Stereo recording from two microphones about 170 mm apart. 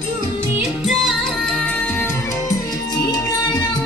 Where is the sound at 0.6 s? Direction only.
Centre (ahead or behind); by 3.6 s 25° left (ahead or behind).